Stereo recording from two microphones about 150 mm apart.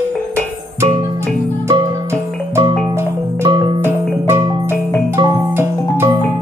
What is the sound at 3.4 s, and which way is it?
Music, 30° right (ahead or behind).